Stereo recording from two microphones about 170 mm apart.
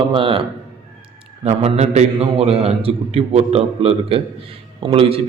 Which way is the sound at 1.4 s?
40° right (ahead or behind).